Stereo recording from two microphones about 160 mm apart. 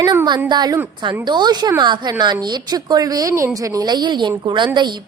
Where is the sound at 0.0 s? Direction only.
25° right (ahead or behind).